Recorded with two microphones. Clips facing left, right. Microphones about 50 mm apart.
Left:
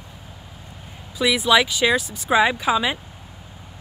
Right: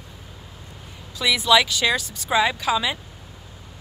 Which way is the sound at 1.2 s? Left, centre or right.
Centre.